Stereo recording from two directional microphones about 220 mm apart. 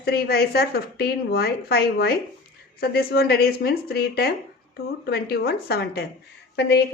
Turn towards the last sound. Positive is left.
turn(degrees=50)  # may be behind; listen again after turning